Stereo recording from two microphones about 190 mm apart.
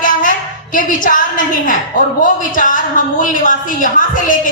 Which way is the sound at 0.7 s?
45° left (ahead or behind).